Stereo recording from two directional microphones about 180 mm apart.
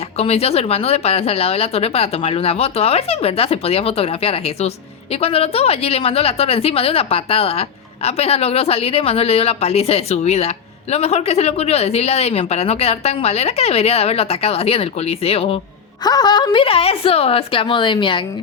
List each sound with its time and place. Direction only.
0.2 s a woman's voice: 35° left (ahead or behind)
16.0 s a woman's voice: 20° left (ahead or behind)